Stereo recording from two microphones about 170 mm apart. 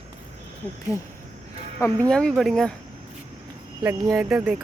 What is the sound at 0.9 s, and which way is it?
Speech, 20° left (ahead or behind).